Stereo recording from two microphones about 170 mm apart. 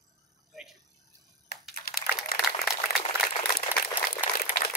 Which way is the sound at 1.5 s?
65° left (ahead or behind).